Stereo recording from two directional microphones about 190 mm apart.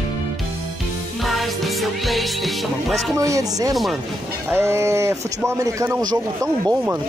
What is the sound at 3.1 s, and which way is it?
Speech, 15° right (ahead or behind).